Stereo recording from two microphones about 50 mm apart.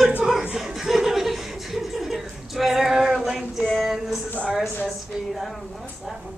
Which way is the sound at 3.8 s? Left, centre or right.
Centre.